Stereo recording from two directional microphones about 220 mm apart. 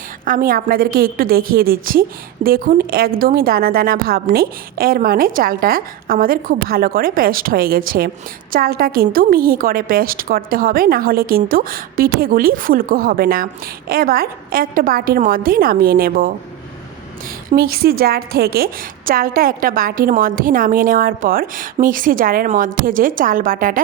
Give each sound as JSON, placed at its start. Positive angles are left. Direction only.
{"t": 0.3, "sound": "a woman's voice", "side_deg": -40}
{"t": 17.5, "sound": "a woman's voice", "side_deg": -45}